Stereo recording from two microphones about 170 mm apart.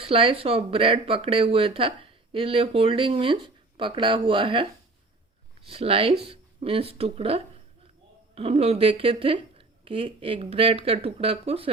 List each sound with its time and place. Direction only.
0.0 s speech: 30° right (ahead or behind)
5.6 s speech: 35° right (ahead or behind)